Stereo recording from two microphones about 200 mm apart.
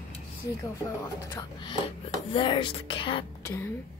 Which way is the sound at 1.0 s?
15° left (ahead or behind).